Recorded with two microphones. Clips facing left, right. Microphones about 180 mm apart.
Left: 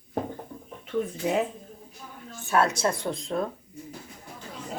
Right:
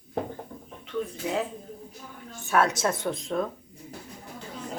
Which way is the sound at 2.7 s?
Centre (ahead or behind).